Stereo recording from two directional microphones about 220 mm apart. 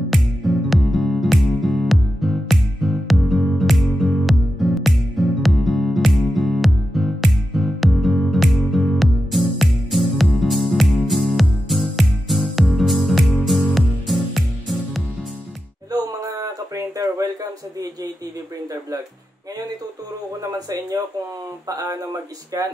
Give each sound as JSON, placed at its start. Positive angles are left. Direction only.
{"t": 0.1, "sound": "music", "side_deg": 0}
{"t": 15.9, "sound": "a sound", "side_deg": -15}
{"t": 20.5, "sound": "speech", "side_deg": -15}